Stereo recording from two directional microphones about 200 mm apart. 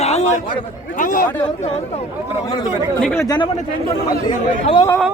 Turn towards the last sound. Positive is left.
turn(degrees=20)  # may be behind; listen again after turning